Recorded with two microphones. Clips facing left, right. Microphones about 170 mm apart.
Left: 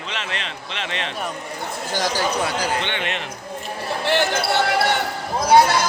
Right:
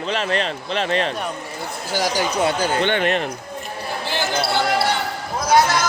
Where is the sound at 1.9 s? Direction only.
10° right (ahead or behind).